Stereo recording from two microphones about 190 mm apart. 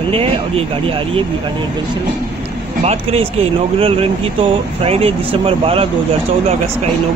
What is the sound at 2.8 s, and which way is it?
Speech, 30° right (ahead or behind).